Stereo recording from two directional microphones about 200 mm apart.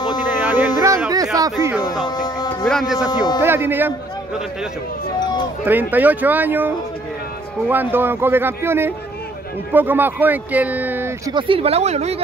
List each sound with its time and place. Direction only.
0.3 s a sound: 10° right (ahead or behind)
2.0 s a sound: 20° left (ahead or behind)
2.6 s speech: centre (ahead or behind)
3.3 s speech: 10° right (ahead or behind)
5.2 s speech: 20° left (ahead or behind)
5.7 s speech: 10° right (ahead or behind)
11.3 s speech: 25° right (ahead or behind)